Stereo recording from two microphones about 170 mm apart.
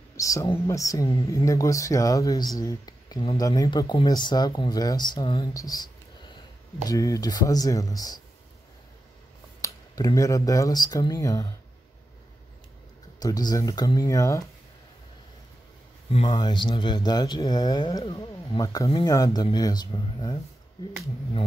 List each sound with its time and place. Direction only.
0.2 s speech: 20° left (ahead or behind)
6.9 s speech: 20° left (ahead or behind)
9.6 s speech: 20° left (ahead or behind)
13.2 s speech: 25° left (ahead or behind)
16.1 s speech: 30° left (ahead or behind)